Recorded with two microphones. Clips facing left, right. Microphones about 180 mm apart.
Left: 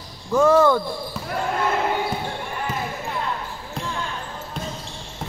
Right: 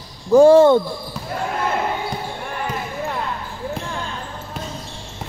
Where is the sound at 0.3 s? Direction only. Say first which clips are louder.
Right 6 dB; 30° right (ahead or behind).